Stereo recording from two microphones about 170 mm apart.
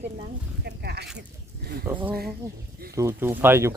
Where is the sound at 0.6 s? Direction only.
75° right (ahead or behind).